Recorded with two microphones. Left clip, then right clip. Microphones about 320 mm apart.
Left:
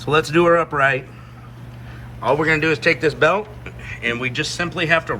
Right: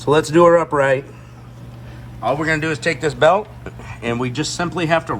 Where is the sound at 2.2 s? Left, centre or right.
Centre.